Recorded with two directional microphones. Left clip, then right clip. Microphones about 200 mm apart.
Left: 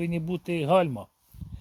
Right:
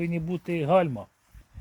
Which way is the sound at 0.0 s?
15° left (ahead or behind).